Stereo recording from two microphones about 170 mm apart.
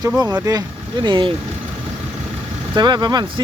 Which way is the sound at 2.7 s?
25° right (ahead or behind).